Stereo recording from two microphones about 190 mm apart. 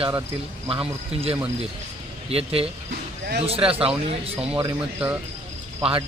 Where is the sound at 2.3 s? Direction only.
30° right (ahead or behind).